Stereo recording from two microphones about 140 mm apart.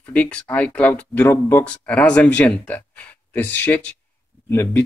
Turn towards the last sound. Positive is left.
turn(degrees=15)  # may be behind; listen again after turning